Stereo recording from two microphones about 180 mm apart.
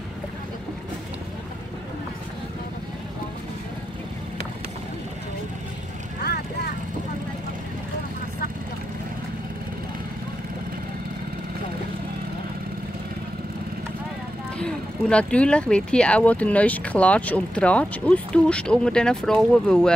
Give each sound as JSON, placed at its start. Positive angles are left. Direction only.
{"t": 6.2, "sound": "vehicle", "side_deg": 65}
{"t": 14.6, "sound": "speech", "side_deg": 5}